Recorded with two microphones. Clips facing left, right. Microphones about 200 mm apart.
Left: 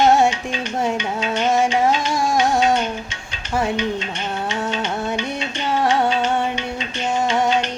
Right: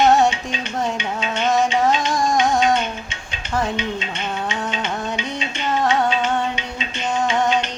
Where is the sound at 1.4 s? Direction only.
10° left (ahead or behind).